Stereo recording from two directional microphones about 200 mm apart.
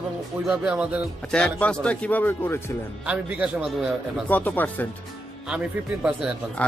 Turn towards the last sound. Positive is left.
turn(degrees=-5)  # may be behind; listen again after turning